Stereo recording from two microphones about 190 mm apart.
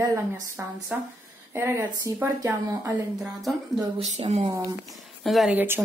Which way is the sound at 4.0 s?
35° right (ahead or behind).